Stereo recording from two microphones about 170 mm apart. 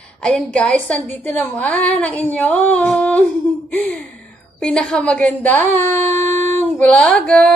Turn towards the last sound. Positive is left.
turn(degrees=5)  # may be behind; listen again after turning